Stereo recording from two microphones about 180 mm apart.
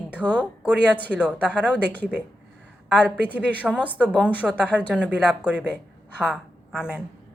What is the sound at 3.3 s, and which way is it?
A woman's voice, 10° right (ahead or behind).